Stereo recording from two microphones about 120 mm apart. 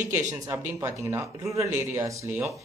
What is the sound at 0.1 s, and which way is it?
Speech, 25° right (ahead or behind).